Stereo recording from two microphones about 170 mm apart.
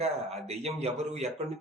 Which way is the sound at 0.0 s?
40° right (ahead or behind).